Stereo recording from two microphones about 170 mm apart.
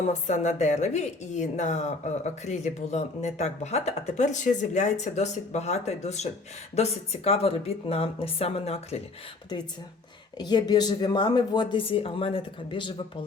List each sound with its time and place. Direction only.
0.0 s a woman's voice: 45° left (ahead or behind)
10.3 s speech: 25° left (ahead or behind)